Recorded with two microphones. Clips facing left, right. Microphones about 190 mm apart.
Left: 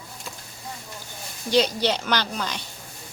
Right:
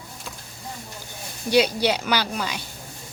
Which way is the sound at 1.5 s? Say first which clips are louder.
Right 2 dB; 10° right (ahead or behind).